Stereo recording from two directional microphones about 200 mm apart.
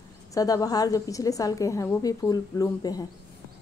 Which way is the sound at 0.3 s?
15° left (ahead or behind).